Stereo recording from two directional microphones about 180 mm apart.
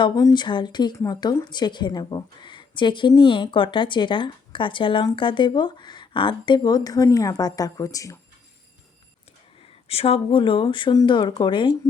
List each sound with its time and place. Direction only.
0.0 s speech: 20° left (ahead or behind)
9.9 s speech: 30° left (ahead or behind)